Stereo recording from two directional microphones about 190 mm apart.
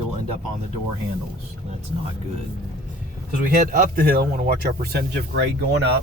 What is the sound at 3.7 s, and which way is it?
Speech, 45° right (ahead or behind).